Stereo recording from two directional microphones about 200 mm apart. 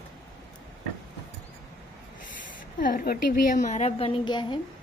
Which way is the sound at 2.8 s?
45° left (ahead or behind).